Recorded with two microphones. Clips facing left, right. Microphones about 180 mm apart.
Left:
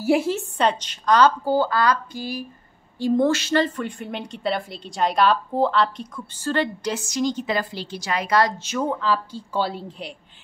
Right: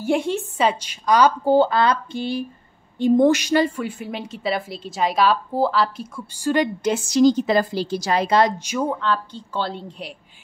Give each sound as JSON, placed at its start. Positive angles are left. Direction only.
{"t": 0.0, "sound": "a woman's voice", "side_deg": 5}
{"t": 1.4, "sound": "a woman's voice", "side_deg": -20}
{"t": 6.9, "sound": "a woman's voice", "side_deg": -30}
{"t": 8.8, "sound": "a woman's voice", "side_deg": 5}